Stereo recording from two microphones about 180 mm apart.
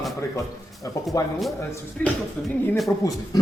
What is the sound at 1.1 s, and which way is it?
Speech, 20° left (ahead or behind).